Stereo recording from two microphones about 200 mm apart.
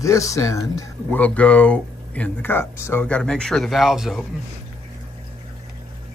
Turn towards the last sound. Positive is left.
turn(degrees=0)  # may be behind; listen again after turning